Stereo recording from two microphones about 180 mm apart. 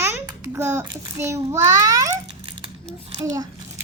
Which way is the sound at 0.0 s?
15° right (ahead or behind).